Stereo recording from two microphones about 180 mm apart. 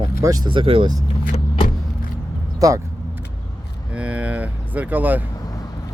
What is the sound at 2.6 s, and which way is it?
Speech, 20° right (ahead or behind).